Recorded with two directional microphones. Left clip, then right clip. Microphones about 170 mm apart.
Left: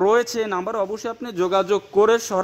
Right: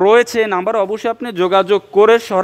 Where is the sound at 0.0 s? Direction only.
10° right (ahead or behind).